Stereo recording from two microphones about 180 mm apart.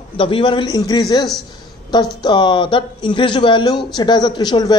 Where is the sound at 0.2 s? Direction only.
30° left (ahead or behind).